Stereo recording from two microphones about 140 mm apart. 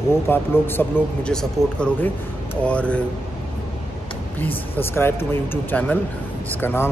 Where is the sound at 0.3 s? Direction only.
15° left (ahead or behind).